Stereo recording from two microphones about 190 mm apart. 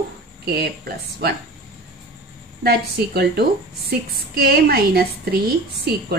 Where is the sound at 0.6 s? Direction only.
55° right (ahead or behind).